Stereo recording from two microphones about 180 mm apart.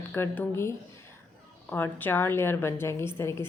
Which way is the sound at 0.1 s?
10° left (ahead or behind).